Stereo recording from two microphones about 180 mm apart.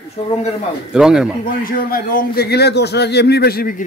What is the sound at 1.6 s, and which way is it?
A man's voice, 55° left (ahead or behind).